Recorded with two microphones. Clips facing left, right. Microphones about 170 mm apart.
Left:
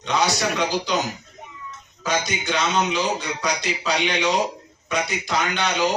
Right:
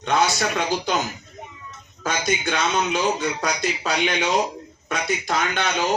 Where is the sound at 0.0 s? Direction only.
50° right (ahead or behind).